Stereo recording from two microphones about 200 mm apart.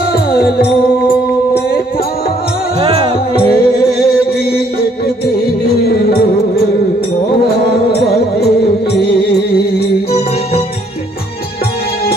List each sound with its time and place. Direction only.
0.1 s music: 50° left (ahead or behind)
3.3 s music: 50° left (ahead or behind)
5.8 s music: 50° left (ahead or behind)